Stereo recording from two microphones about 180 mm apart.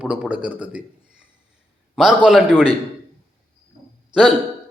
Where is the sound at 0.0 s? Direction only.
5° right (ahead or behind).